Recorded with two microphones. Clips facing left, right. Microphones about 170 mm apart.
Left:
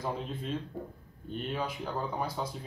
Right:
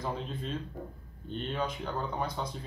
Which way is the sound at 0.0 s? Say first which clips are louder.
Even; 5° left (ahead or behind).